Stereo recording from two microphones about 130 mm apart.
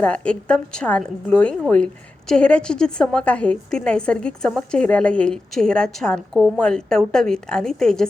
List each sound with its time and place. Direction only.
0.0 s a woman's voice: 10° left (ahead or behind)